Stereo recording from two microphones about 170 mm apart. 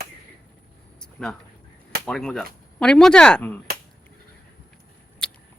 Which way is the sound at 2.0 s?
5° left (ahead or behind).